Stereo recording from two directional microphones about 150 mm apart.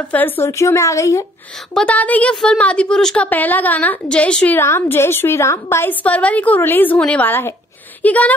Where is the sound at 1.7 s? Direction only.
10° left (ahead or behind).